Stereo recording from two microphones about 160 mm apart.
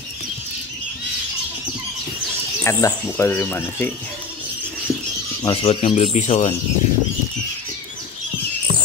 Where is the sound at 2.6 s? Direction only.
15° left (ahead or behind).